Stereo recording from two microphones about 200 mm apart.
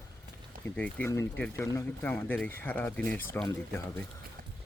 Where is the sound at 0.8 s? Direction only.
10° left (ahead or behind).